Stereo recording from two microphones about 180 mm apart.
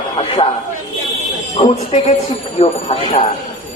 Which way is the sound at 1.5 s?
35° left (ahead or behind).